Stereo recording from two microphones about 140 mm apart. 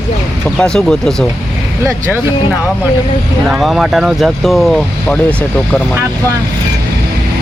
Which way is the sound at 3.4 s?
Centre (ahead or behind).